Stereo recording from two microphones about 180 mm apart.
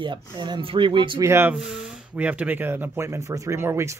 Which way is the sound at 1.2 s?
15° right (ahead or behind).